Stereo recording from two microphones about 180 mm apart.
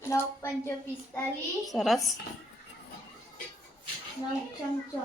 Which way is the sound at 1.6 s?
Centre (ahead or behind).